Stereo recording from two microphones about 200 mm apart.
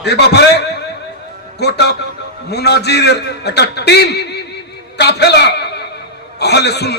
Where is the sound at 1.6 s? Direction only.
55° left (ahead or behind).